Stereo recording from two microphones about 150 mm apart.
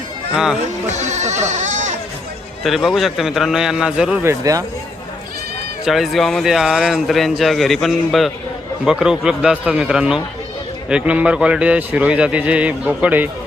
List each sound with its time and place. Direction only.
0.9 s speech: 50° right (ahead or behind)
2.6 s speech: centre (ahead or behind)
4.2 s speech: 20° right (ahead or behind)
5.8 s a man's voice: centre (ahead or behind)